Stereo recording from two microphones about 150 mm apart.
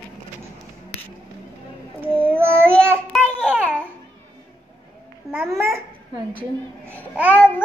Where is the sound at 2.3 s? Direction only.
15° right (ahead or behind).